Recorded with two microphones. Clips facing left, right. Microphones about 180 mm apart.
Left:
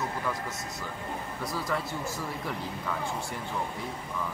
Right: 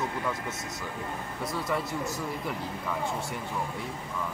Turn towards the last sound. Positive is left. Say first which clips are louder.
# right 1 dB
turn(degrees=0)  # may be behind; listen again after turning